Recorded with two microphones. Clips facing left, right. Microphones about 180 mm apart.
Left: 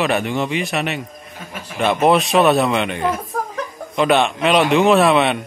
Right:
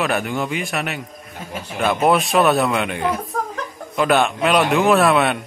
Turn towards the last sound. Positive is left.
turn(degrees=0)  # may be behind; listen again after turning